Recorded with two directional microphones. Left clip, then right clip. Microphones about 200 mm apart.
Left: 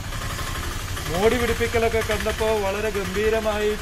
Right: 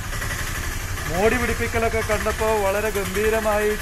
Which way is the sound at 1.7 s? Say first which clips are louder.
Right 2 dB; 5° left (ahead or behind).